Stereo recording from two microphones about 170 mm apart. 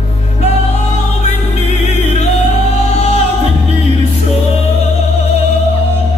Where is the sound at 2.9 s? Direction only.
40° left (ahead or behind).